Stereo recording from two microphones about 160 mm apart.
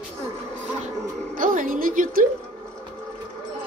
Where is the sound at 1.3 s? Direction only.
60° right (ahead or behind).